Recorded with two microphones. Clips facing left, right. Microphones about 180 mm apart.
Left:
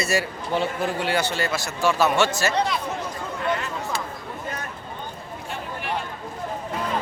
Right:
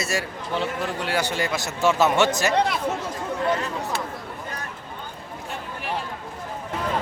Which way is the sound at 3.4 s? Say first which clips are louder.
Right 2 dB; 35° right (ahead or behind).